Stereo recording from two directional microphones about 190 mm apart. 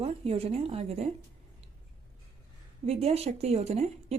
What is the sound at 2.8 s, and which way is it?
Speech, 30° right (ahead or behind).